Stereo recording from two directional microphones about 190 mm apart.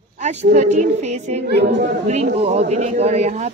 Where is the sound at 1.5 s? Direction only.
65° right (ahead or behind).